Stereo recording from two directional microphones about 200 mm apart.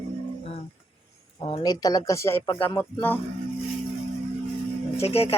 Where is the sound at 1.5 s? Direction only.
20° left (ahead or behind).